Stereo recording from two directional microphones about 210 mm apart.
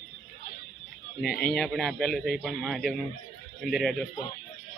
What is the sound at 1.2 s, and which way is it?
Speech, 45° left (ahead or behind).